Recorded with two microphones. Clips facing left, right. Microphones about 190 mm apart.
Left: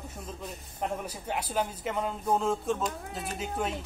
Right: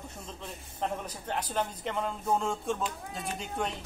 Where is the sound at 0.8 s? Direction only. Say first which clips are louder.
Left 1 dB; 10° left (ahead or behind).